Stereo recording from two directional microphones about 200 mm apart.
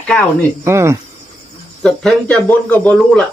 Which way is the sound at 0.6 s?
15° right (ahead or behind).